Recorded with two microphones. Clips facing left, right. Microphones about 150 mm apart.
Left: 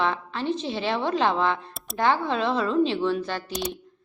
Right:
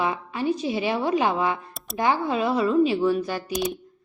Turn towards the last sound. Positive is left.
turn(degrees=-10)  # may be behind; listen again after turning